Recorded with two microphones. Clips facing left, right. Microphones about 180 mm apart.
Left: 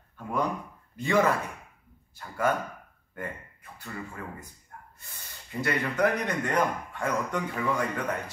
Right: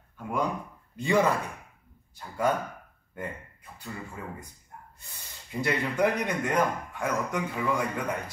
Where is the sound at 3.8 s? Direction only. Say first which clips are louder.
Even; 15° right (ahead or behind).